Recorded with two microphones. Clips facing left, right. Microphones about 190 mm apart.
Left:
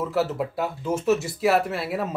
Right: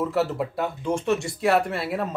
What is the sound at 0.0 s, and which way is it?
A man's voice, centre (ahead or behind).